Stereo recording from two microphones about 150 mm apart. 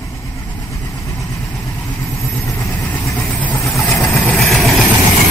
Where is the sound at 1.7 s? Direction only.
10° left (ahead or behind).